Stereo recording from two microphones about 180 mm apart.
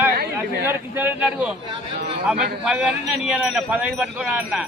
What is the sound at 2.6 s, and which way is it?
Speech, 5° right (ahead or behind).